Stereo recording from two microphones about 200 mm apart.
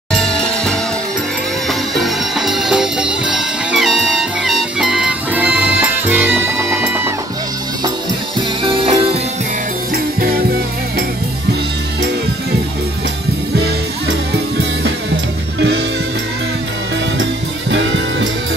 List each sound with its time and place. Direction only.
0.1 s music: 5° left (ahead or behind)
8.4 s music: 25° right (ahead or behind)
17.2 s music: 65° right (ahead or behind)